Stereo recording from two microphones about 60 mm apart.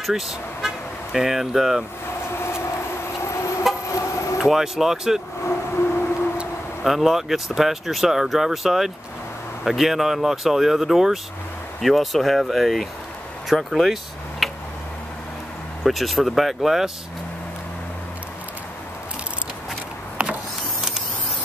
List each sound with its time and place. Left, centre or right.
0.0 s speech: centre
2.3 s vehicle: left
4.4 s speech: centre
5.4 s vehicle: left
6.3 s a sound: centre
6.9 s speech: centre
14.4 s tick-tock: centre
15.8 s speech: centre